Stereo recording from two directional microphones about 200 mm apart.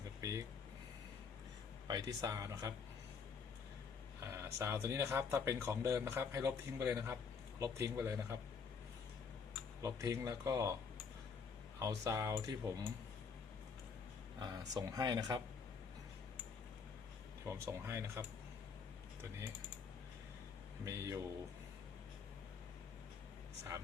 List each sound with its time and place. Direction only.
0.2 s a sound: 15° right (ahead or behind)
1.9 s speech: 20° right (ahead or behind)
4.2 s a sound: 15° right (ahead or behind)
4.6 s speech: 15° right (ahead or behind)
9.8 s speech: 15° right (ahead or behind)
11.8 s speech: 15° right (ahead or behind)
14.3 s speech: 20° right (ahead or behind)
17.4 s speech: 15° right (ahead or behind)
20.8 s speech: 15° right (ahead or behind)